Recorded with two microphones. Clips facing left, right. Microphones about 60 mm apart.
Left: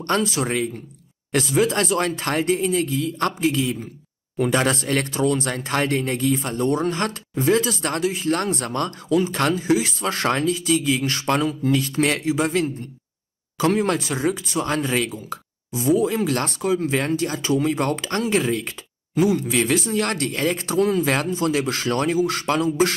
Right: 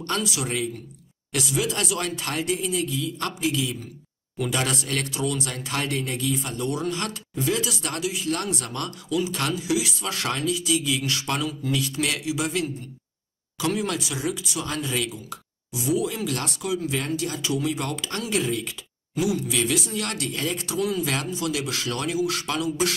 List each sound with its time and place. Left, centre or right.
0.0 s speech: left